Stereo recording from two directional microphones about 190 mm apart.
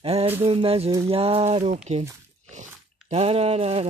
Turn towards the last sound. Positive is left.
turn(degrees=-30)  # may be behind; listen again after turning